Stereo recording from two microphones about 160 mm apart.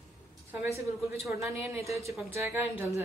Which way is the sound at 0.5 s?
10° right (ahead or behind).